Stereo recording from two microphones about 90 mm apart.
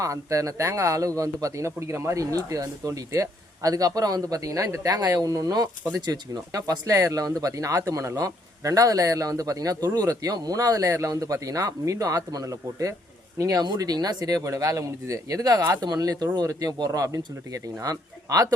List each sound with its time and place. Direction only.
0.0 s a man's voice: 40° right (ahead or behind)